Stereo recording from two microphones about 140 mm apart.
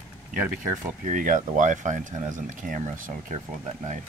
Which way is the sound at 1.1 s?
70° right (ahead or behind).